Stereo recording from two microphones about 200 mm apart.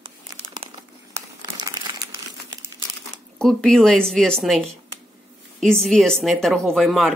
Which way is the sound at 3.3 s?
5° left (ahead or behind).